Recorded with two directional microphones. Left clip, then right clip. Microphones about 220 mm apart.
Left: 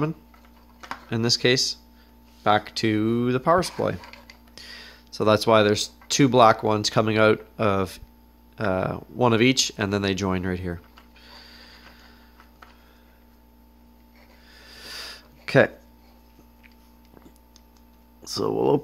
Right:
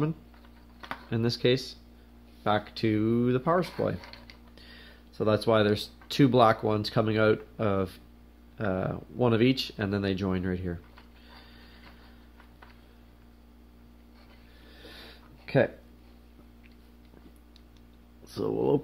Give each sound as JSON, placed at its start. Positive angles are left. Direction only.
{"t": 1.1, "sound": "speech", "side_deg": 25}
{"t": 4.0, "sound": "mechanisms", "side_deg": -5}
{"t": 4.6, "sound": "speech", "side_deg": 30}
{"t": 11.2, "sound": "mechanisms", "side_deg": 25}
{"t": 14.7, "sound": "a sound", "side_deg": 35}
{"t": 18.2, "sound": "speech", "side_deg": 25}